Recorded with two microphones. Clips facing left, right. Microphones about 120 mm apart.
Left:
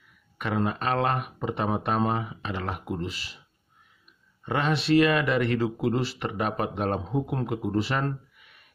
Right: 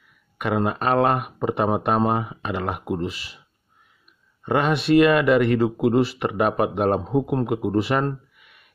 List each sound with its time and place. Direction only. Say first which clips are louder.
0.4 s speech: right 5 dB; 55° right (ahead or behind)
4.5 s speech: right 5 dB; 55° right (ahead or behind)